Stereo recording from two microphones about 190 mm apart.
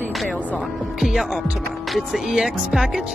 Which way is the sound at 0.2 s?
Centre (ahead or behind).